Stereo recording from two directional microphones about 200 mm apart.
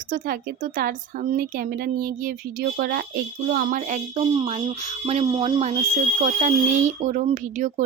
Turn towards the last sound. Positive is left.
turn(degrees=-35)  # may be behind; listen again after turning